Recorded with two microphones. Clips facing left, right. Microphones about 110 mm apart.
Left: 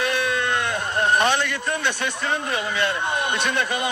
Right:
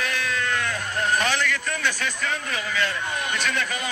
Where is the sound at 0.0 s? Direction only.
25° left (ahead or behind).